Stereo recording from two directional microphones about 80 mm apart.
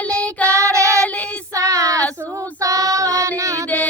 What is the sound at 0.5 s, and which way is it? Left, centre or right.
Child singing, right.